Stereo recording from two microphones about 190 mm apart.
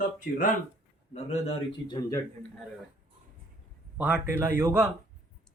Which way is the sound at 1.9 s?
20° left (ahead or behind).